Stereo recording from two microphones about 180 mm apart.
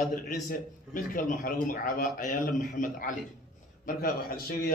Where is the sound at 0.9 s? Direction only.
50° left (ahead or behind).